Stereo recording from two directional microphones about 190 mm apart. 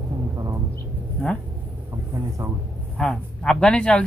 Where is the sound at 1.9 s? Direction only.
15° right (ahead or behind).